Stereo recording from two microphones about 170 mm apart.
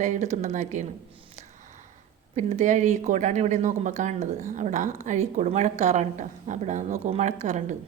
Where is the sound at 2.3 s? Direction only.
45° right (ahead or behind).